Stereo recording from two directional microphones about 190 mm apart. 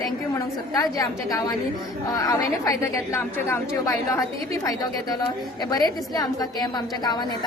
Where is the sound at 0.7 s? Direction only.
20° left (ahead or behind).